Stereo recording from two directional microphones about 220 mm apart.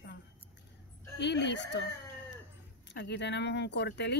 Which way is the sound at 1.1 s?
50° left (ahead or behind).